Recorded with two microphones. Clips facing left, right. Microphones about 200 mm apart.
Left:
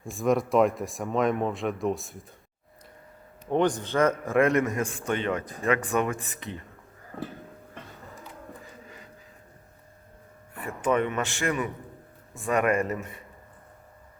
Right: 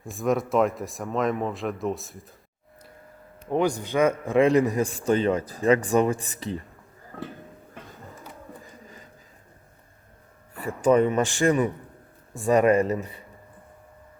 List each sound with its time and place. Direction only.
0.0 s speech: centre (ahead or behind)
3.5 s a man's voice: 10° right (ahead or behind)
4.4 s a man's voice: 30° right (ahead or behind)
10.8 s a man's voice: 40° right (ahead or behind)